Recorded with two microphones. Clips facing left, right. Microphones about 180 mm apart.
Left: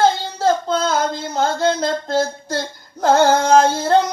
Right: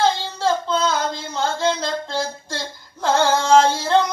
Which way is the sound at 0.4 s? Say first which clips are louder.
Left 3 dB; 50° left (ahead or behind).